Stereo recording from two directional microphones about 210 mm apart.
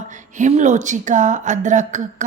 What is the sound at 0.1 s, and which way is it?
Speech, 35° right (ahead or behind).